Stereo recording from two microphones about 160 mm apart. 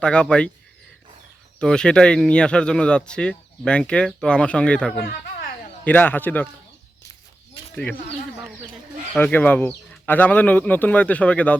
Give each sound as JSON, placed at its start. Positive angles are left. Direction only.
{"t": 0.0, "sound": "speech", "side_deg": 5}
{"t": 1.5, "sound": "a man's voice", "side_deg": 5}
{"t": 7.6, "sound": "a sound", "side_deg": 35}
{"t": 9.1, "sound": "speech", "side_deg": 10}